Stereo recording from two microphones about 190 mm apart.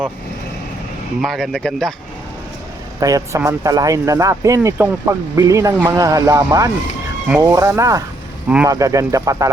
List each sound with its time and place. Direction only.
1.2 s speech: centre (ahead or behind)
3.0 s speech: 15° right (ahead or behind)